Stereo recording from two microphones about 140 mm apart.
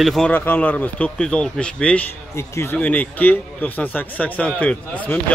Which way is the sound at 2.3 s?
20° left (ahead or behind).